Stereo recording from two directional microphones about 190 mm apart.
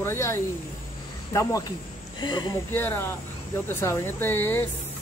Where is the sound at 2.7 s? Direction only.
10° left (ahead or behind).